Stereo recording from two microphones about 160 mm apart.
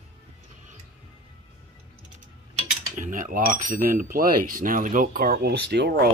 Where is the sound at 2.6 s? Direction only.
50° right (ahead or behind); by 6.1 s 90° right.